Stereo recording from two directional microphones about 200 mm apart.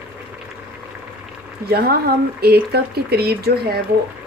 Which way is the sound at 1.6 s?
50° right (ahead or behind).